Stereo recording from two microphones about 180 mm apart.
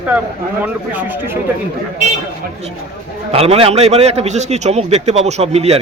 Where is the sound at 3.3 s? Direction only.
35° right (ahead or behind).